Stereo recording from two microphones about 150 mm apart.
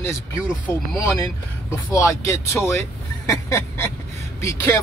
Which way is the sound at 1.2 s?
20° left (ahead or behind).